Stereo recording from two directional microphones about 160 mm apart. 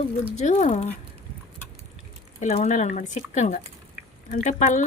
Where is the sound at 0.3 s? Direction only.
45° left (ahead or behind).